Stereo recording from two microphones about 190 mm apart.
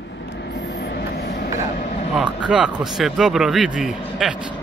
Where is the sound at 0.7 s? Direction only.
60° left (ahead or behind).